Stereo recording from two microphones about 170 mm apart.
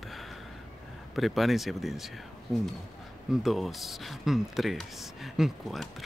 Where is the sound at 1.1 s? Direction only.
Centre (ahead or behind).